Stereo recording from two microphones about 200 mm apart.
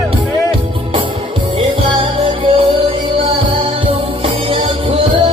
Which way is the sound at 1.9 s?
25° right (ahead or behind).